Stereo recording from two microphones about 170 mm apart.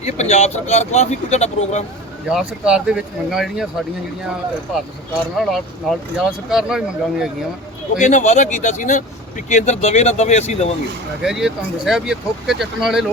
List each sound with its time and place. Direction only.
0.0 s speech: 40° left (ahead or behind)
2.3 s speech: 5° right (ahead or behind)
7.9 s speech: 45° left (ahead or behind)
11.2 s speech: 5° right (ahead or behind)